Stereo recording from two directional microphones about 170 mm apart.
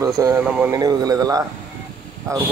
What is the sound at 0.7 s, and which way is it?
Speech, 20° right (ahead or behind).